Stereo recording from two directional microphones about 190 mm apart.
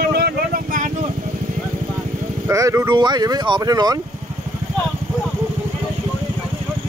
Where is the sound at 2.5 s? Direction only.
15° right (ahead or behind).